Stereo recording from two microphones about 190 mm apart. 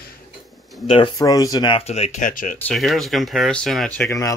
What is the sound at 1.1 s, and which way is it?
Speech, 20° left (ahead or behind).